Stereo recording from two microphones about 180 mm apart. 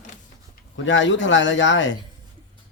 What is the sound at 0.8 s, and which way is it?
A man's voice, 90° left.